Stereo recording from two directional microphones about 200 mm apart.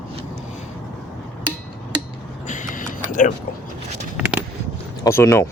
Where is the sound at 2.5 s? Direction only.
40° left (ahead or behind).